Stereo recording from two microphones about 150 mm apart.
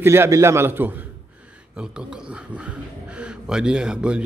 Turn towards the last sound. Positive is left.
turn(degrees=-5)  # may be behind; listen again after turning